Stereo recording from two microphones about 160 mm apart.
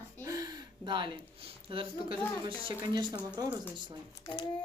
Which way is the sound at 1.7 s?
35° right (ahead or behind).